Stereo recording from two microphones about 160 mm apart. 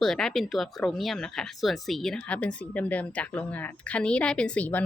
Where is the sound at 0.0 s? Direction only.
5° left (ahead or behind).